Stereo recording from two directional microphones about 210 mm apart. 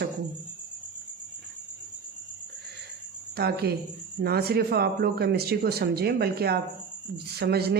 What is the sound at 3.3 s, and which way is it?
Speech, 50° right (ahead or behind).